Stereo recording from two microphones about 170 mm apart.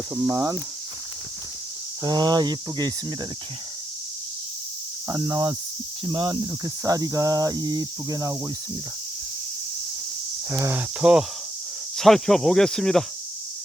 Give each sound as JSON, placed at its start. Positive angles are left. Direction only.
{"t": 0.1, "sound": "cricket", "side_deg": -20}
{"t": 2.0, "sound": "cricket", "side_deg": -25}
{"t": 5.0, "sound": "cricket", "side_deg": -25}
{"t": 10.5, "sound": "cricket", "side_deg": -15}
{"t": 11.9, "sound": "speech", "side_deg": 0}